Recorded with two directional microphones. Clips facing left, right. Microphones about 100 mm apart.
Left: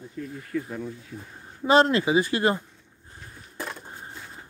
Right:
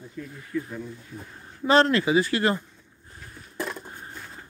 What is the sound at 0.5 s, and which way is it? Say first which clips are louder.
Speech: even; 65° left (ahead or behind).